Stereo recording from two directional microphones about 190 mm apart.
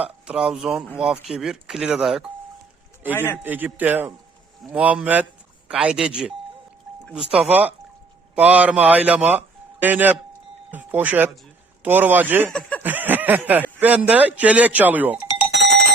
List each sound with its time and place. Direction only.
0.0 s speech: 5° right (ahead or behind)
3.1 s a man's voice: 10° left (ahead or behind)
3.4 s speech: 10° right (ahead or behind)
12.5 s speech: 5° left (ahead or behind)
12.8 s speech: 10° right (ahead or behind)
15.5 s cowbell: 65° right (ahead or behind)